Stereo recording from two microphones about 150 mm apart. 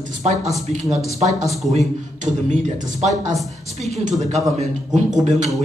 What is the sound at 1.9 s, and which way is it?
A man's voice, 55° right (ahead or behind).